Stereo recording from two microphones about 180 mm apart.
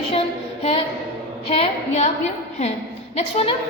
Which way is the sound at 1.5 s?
35° left (ahead or behind).